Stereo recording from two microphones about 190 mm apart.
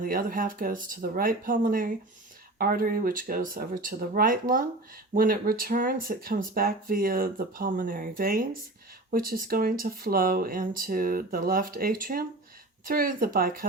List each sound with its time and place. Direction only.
0.0 s speech: 50° right (ahead or behind)